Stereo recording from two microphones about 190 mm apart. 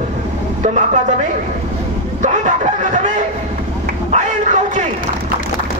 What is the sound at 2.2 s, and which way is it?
Speech, 40° right (ahead or behind).